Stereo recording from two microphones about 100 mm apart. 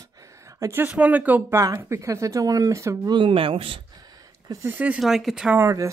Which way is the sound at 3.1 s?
60° right (ahead or behind).